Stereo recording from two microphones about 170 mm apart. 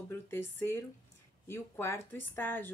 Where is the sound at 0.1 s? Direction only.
15° left (ahead or behind).